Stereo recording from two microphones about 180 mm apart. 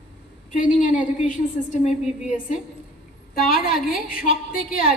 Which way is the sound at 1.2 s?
40° left (ahead or behind).